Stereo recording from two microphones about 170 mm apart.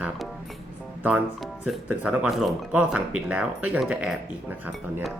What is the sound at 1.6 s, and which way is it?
Speech, 5° right (ahead or behind).